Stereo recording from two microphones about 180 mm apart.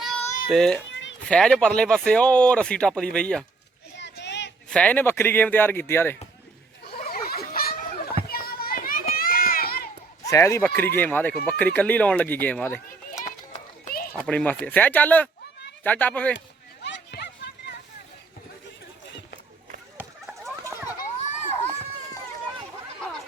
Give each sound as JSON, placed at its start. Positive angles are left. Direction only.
{"t": 0.0, "sound": "a sound", "side_deg": 0}
{"t": 1.3, "sound": "speech", "side_deg": 5}
{"t": 3.9, "sound": "child singing", "side_deg": 75}
{"t": 4.7, "sound": "speech", "side_deg": 5}
{"t": 6.8, "sound": "children playing", "side_deg": 55}
{"t": 8.3, "sound": "run", "side_deg": 55}
{"t": 10.2, "sound": "speech", "side_deg": 15}
{"t": 13.2, "sound": "children playing", "side_deg": 45}
{"t": 14.1, "sound": "speech", "side_deg": 10}
{"t": 16.8, "sound": "a sound", "side_deg": 70}
{"t": 20.6, "sound": "children playing", "side_deg": -15}